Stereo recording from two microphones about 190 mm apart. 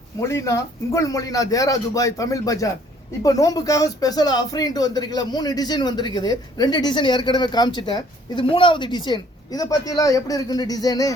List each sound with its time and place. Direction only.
0.2 s a man's voice: 15° left (ahead or behind)